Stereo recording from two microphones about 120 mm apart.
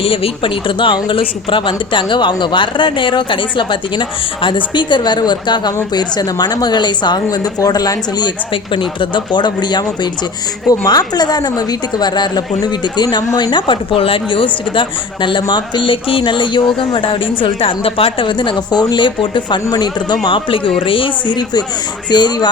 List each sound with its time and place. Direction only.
0.0 s a man's voice: 50° left (ahead or behind); by 8.3 s 30° left (ahead or behind)
8.7 s a woman's voice: 45° left (ahead or behind)